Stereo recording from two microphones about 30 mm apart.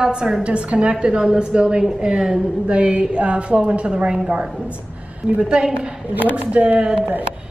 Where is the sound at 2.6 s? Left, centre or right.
Right.